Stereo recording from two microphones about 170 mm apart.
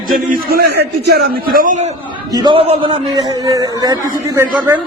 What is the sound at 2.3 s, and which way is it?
A man's voice, 30° right (ahead or behind).